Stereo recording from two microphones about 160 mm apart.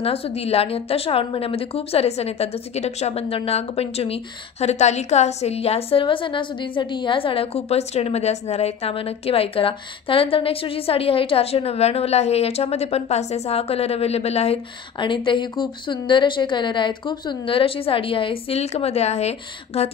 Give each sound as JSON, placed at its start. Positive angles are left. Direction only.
{"t": 0.0, "sound": "a woman's voice", "side_deg": 35}